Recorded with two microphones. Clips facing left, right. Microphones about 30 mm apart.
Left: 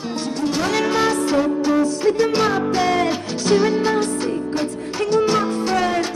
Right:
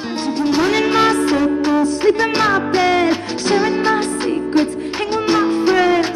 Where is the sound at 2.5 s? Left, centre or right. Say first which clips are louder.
Right 3 dB; right.